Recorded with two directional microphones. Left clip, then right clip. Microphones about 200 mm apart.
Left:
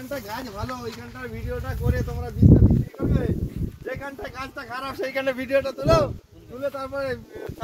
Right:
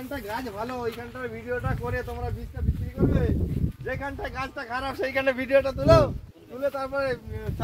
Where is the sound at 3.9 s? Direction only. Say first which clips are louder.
Right 1 dB; 55° left (ahead or behind).